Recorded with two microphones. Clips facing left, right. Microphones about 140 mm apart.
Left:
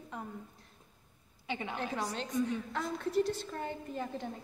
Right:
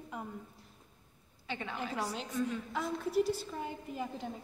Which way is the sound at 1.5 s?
15° left (ahead or behind).